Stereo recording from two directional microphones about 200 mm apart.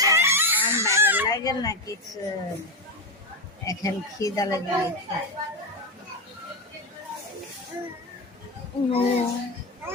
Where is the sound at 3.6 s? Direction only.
15° left (ahead or behind).